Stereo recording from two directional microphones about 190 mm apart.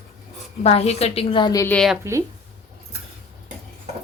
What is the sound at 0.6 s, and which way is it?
A woman's voice, 35° left (ahead or behind).